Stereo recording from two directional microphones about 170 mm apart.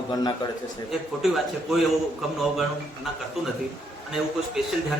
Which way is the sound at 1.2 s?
Centre (ahead or behind).